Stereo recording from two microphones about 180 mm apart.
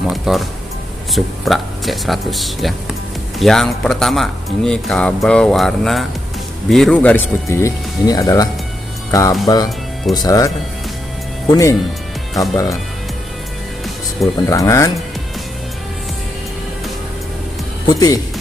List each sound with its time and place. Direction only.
0.0 s speech: centre (ahead or behind); by 8.5 s 20° left (ahead or behind)
9.5 s speech: 20° left (ahead or behind)
14.5 s speech: 20° left (ahead or behind)
17.8 s speech: 20° left (ahead or behind)